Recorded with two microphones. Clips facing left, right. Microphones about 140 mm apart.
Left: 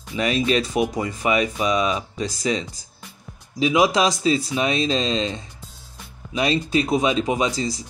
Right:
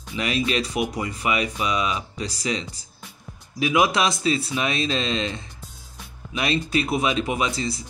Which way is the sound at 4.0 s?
35° left (ahead or behind).